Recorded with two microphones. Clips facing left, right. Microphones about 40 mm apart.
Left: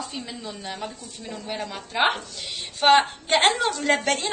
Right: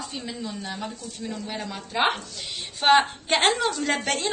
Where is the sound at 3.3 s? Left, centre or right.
Left.